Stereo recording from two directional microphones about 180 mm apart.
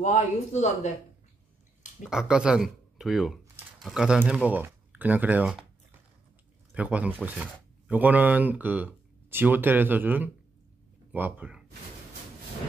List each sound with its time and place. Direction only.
0.0 s speech: 40° left (ahead or behind)
2.0 s speech: 5° right (ahead or behind)
6.7 s speech: 10° right (ahead or behind)